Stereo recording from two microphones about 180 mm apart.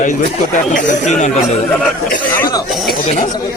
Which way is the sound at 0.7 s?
45° left (ahead or behind).